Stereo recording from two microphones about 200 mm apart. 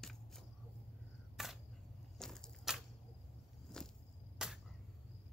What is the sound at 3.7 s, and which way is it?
Walk, 5° left (ahead or behind).